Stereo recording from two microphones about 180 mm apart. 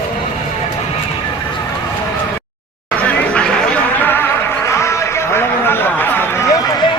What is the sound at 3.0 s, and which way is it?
Music, 5° left (ahead or behind).